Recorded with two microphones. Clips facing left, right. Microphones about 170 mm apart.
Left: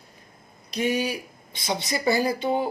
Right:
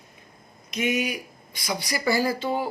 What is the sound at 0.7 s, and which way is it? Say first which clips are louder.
A man's voice: left 1 dB; 35° left (ahead or behind).